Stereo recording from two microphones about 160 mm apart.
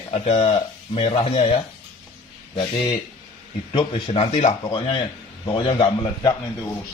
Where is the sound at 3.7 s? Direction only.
30° left (ahead or behind).